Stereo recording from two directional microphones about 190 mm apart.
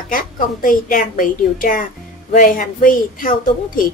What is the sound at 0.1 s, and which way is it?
A woman's voice, 45° left (ahead or behind).